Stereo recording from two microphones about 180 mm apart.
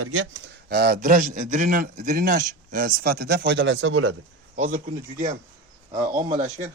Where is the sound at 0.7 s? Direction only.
60° right (ahead or behind); by 4.0 s 90° right.